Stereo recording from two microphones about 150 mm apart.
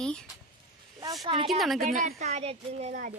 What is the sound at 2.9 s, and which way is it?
Speech, 65° right (ahead or behind).